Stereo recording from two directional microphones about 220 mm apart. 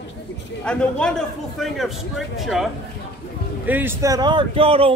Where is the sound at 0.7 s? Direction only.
5° left (ahead or behind).